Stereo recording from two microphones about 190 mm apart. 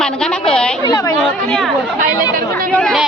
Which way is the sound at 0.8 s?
20° left (ahead or behind).